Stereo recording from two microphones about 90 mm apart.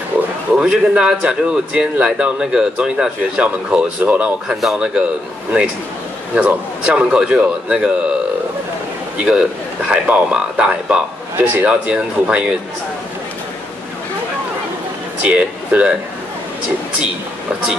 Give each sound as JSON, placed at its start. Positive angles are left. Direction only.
{"t": 0.6, "sound": "a man's voice", "side_deg": -10}
{"t": 6.3, "sound": "a man's voice", "side_deg": -15}
{"t": 9.2, "sound": "a man's voice", "side_deg": -10}
{"t": 15.2, "sound": "speech", "side_deg": -10}